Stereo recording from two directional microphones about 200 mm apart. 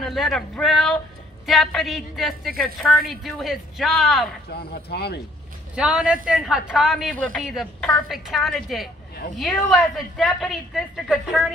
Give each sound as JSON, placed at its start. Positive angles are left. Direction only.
{"t": 0.0, "sound": "a woman's voice", "side_deg": 0}
{"t": 4.5, "sound": "speech", "side_deg": 50}
{"t": 5.8, "sound": "a woman's voice", "side_deg": -5}